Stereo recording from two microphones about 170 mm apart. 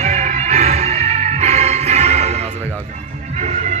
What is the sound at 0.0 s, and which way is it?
Music, 40° right (ahead or behind).